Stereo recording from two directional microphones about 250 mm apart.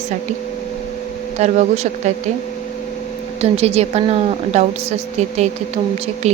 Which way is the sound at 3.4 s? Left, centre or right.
Right.